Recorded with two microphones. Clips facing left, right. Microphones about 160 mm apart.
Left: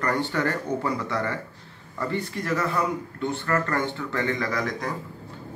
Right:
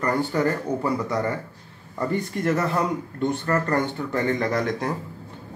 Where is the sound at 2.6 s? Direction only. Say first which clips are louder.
Right 2 dB; 20° right (ahead or behind).